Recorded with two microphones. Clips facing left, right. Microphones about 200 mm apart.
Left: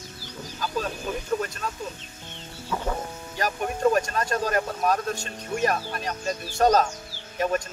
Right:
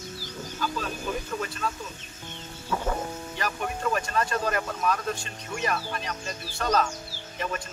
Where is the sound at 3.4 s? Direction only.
40° left (ahead or behind).